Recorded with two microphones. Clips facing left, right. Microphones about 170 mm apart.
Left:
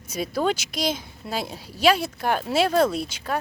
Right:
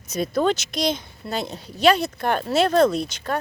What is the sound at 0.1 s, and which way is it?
A child's voice, 5° left (ahead or behind).